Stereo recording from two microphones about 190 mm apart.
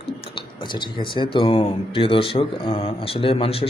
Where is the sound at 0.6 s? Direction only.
25° left (ahead or behind).